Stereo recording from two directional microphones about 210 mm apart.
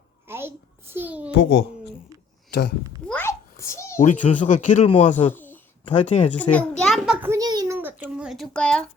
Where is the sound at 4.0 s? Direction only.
35° left (ahead or behind).